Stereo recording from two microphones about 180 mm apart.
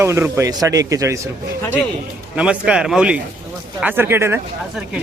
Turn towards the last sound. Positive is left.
turn(degrees=-15)  # may be behind; listen again after turning